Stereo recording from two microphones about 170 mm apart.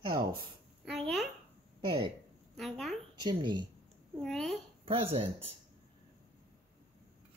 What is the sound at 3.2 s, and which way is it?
Speech, 25° right (ahead or behind).